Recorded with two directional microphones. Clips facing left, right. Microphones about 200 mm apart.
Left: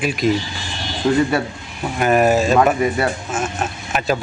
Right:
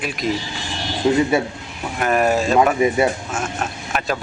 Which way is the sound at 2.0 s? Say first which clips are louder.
Left 3 dB; 5° left (ahead or behind).